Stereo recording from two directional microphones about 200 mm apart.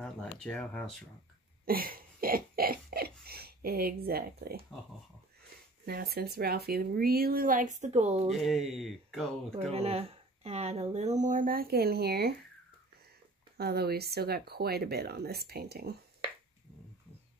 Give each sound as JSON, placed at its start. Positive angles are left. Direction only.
{"t": 0.0, "sound": "speech", "side_deg": 5}
{"t": 1.7, "sound": "a sound", "side_deg": -45}
{"t": 5.9, "sound": "speech", "side_deg": -50}
{"t": 8.3, "sound": "speech", "side_deg": 0}
{"t": 9.6, "sound": "speech", "side_deg": -30}
{"t": 13.6, "sound": "speech", "side_deg": -50}